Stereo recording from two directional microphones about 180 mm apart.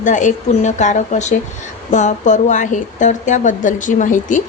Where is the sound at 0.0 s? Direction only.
45° left (ahead or behind).